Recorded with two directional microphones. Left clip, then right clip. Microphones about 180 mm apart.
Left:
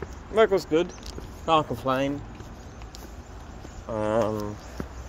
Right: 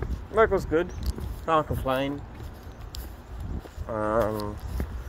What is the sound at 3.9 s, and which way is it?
Speech, 10° left (ahead or behind).